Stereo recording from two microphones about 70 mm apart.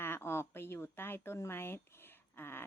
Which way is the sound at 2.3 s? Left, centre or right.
Left.